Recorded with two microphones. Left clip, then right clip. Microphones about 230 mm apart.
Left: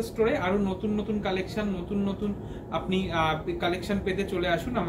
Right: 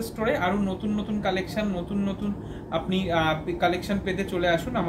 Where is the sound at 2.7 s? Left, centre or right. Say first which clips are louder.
Right 3 dB; right.